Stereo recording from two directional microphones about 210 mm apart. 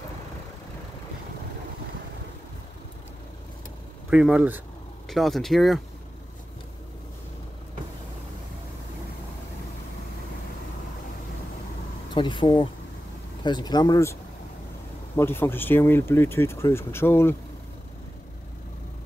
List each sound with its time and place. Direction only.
4.1 s speech: 5° right (ahead or behind)
12.1 s speech: 20° left (ahead or behind)
15.1 s speech: 10° left (ahead or behind)